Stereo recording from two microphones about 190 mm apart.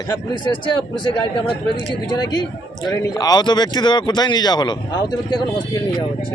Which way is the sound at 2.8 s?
20° left (ahead or behind).